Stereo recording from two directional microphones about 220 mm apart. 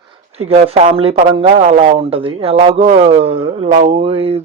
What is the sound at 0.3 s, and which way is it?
Speech, 25° right (ahead or behind).